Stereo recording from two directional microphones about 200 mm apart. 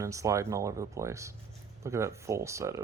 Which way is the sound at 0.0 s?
15° right (ahead or behind).